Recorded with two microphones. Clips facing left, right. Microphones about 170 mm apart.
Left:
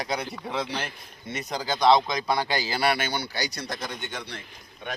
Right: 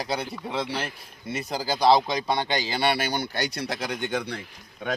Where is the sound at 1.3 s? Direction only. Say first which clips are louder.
Right 2 dB; 30° right (ahead or behind).